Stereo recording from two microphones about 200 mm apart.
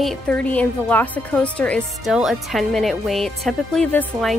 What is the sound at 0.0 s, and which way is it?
A woman's voice, 5° left (ahead or behind).